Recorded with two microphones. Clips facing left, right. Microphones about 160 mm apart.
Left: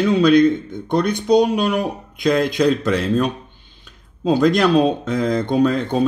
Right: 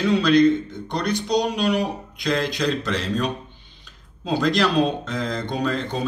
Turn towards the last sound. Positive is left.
turn(degrees=55)  # may be behind; listen again after turning